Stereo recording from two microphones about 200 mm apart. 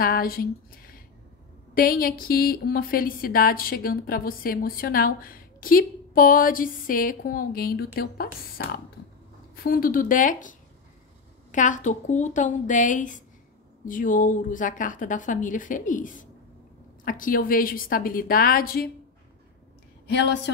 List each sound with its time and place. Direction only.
0.0 s a woman's voice: 45° left (ahead or behind)
11.5 s a woman's voice: 40° left (ahead or behind)
20.1 s a woman's voice: 60° left (ahead or behind)